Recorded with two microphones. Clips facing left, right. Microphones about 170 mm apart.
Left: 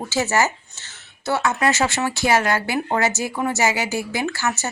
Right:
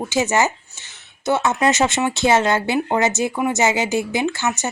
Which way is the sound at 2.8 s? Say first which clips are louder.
Right 3 dB; 10° right (ahead or behind).